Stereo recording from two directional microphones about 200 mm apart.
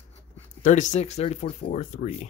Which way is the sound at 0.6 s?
40° left (ahead or behind).